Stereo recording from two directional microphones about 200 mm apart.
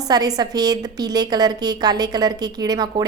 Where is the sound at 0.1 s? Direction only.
20° right (ahead or behind).